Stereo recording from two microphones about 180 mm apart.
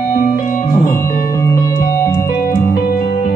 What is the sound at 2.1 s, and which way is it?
Music, 55° left (ahead or behind).